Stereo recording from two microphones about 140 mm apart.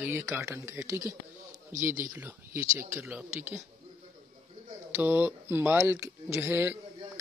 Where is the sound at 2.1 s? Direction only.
20° right (ahead or behind).